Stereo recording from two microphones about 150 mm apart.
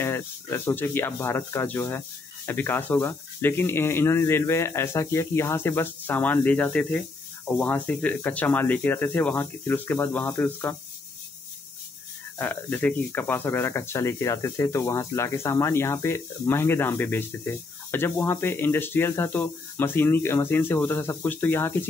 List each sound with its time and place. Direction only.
0.0 s speech: 15° left (ahead or behind)
12.4 s speech: 10° left (ahead or behind)